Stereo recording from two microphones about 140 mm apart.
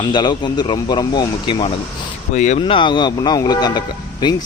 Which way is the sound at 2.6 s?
35° left (ahead or behind).